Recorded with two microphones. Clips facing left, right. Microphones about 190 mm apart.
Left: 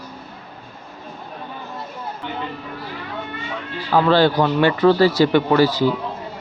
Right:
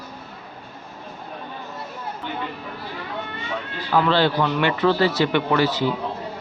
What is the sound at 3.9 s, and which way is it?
Speech, 45° left (ahead or behind).